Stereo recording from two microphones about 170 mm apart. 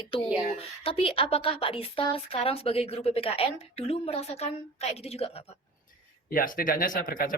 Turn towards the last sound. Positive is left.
turn(degrees=55)  # may be behind; listen again after turning